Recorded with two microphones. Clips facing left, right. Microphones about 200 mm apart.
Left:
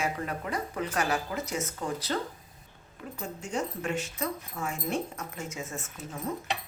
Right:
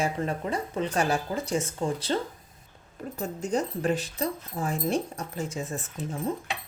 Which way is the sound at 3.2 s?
40° right (ahead or behind).